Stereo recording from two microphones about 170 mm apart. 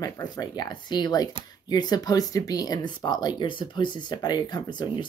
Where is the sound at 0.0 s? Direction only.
25° left (ahead or behind).